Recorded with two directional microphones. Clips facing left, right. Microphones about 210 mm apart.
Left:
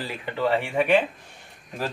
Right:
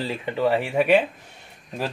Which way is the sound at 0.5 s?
5° right (ahead or behind).